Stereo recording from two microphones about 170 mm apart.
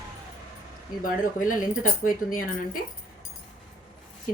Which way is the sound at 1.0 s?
55° left (ahead or behind).